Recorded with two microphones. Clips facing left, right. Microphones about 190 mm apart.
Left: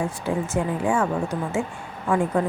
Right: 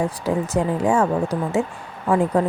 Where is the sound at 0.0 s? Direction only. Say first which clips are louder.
Right 3 dB; 40° right (ahead or behind).